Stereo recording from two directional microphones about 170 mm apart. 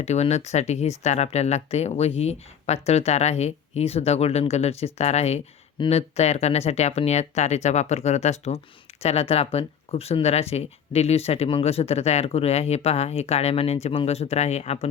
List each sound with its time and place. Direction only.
0.0 s speech: 40° left (ahead or behind)